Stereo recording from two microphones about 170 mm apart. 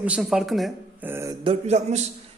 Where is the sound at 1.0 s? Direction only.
15° right (ahead or behind).